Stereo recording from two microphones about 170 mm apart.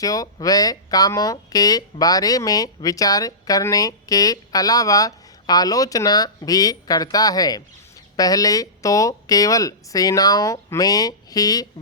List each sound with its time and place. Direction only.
0.0 s speech: 20° left (ahead or behind)